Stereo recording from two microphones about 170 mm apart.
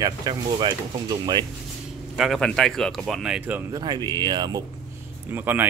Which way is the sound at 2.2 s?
Centre (ahead or behind).